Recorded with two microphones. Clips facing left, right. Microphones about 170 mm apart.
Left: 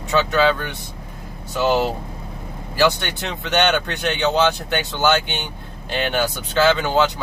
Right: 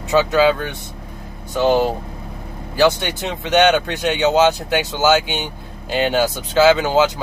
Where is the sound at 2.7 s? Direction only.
Centre (ahead or behind).